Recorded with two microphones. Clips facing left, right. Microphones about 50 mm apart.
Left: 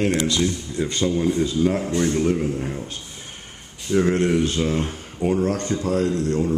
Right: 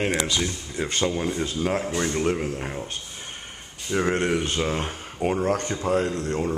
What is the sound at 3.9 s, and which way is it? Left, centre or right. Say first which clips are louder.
Speech: left 4 dB; centre.